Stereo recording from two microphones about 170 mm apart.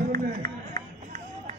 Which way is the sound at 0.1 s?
55° right (ahead or behind).